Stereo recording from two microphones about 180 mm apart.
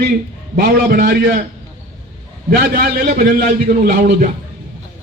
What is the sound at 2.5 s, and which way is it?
A man's voice, 55° right (ahead or behind).